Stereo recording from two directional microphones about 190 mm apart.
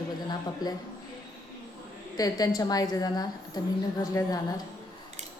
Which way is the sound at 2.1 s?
20° left (ahead or behind).